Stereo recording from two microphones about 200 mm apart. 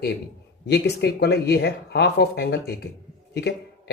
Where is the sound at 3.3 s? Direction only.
55° left (ahead or behind).